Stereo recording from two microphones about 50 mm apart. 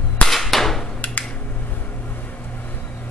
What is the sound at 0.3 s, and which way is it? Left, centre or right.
Cap gun, centre.